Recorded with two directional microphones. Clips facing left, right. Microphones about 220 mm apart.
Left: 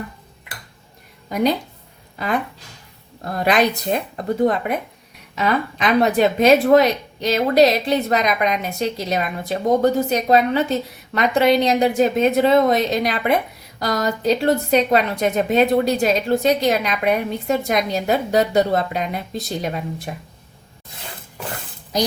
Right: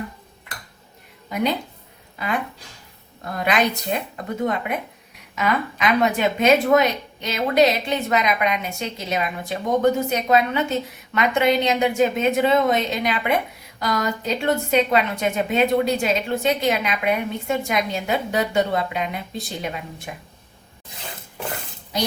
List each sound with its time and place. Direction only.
2.1 s a woman's voice: 40° left (ahead or behind)